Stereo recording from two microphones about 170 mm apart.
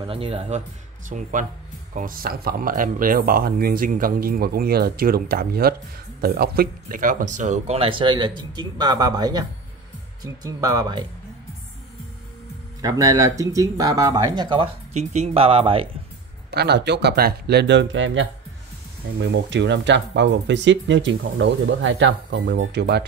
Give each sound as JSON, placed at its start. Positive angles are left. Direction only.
{"t": 0.0, "sound": "speech", "side_deg": -35}
{"t": 1.0, "sound": "speech", "side_deg": -50}
{"t": 12.8, "sound": "speech", "side_deg": -20}
{"t": 16.4, "sound": "speech", "side_deg": -80}